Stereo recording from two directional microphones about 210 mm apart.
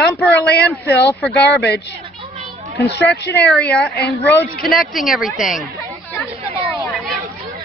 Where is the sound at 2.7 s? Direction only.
55° left (ahead or behind).